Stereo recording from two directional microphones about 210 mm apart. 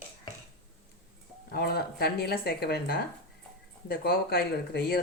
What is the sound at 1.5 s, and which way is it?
Speech, 50° left (ahead or behind).